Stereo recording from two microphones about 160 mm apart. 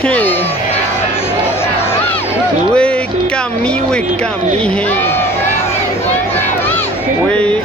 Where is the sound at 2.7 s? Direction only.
5° left (ahead or behind).